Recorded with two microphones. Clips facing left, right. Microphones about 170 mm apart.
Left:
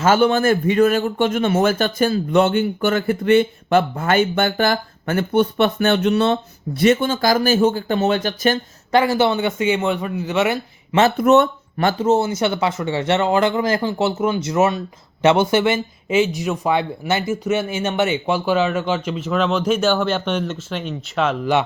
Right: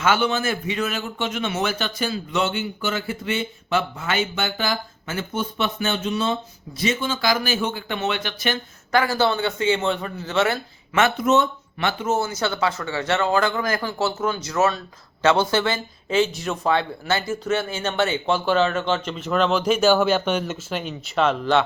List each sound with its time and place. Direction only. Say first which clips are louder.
0.0 s a man's voice: left 6 dB; 45° left (ahead or behind)
8.9 s speech: left 4 dB; 25° left (ahead or behind)
11.2 s speech: left 6 dB; 60° left (ahead or behind)
11.9 s speech: left 6 dB; 35° left (ahead or behind); by 21.6 s 5° left (ahead or behind)